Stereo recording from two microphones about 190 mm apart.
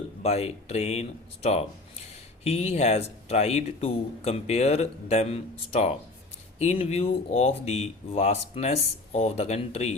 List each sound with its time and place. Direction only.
0.2 s speech: 35° left (ahead or behind)